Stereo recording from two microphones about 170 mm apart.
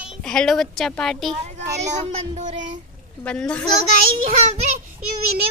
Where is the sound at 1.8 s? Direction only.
45° right (ahead or behind).